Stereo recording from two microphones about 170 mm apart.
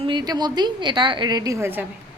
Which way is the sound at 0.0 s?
25° right (ahead or behind).